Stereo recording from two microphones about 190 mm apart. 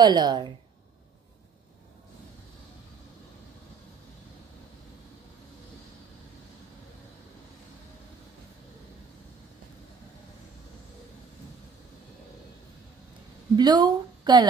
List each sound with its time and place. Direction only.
0.0 s speech: 20° right (ahead or behind)
13.6 s speech: 20° right (ahead or behind)